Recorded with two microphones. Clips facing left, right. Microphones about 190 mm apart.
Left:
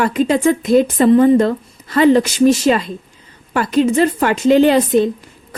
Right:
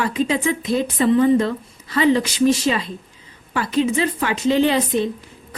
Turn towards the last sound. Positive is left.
turn(degrees=50)  # may be behind; listen again after turning